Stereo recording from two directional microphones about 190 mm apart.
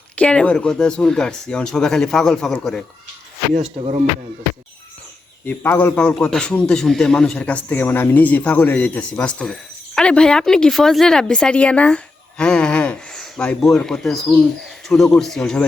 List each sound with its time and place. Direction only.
0.2 s a man's voice: 5° left (ahead or behind)
3.5 s speech: 35° right (ahead or behind)
5.5 s a man's voice: 10° left (ahead or behind)